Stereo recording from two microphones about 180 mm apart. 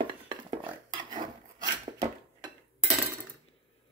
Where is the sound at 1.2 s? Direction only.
20° right (ahead or behind).